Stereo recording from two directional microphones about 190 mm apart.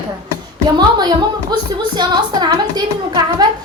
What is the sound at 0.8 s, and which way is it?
A woman's voice, 20° right (ahead or behind).